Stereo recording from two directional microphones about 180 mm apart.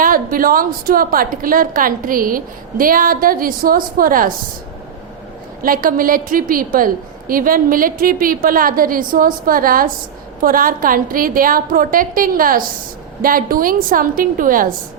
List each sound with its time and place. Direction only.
0.0 s a woman's voice: 50° right (ahead or behind)
5.6 s a woman's voice: 50° right (ahead or behind)